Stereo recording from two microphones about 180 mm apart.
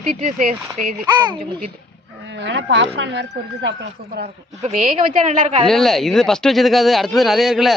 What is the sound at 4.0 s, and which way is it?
Speech, 55° right (ahead or behind).